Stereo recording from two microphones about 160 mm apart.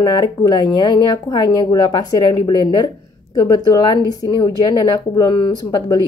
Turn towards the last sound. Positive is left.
turn(degrees=25)  # may be behind; listen again after turning